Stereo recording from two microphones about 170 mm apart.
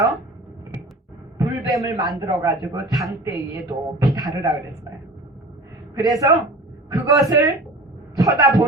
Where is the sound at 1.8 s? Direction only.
20° right (ahead or behind).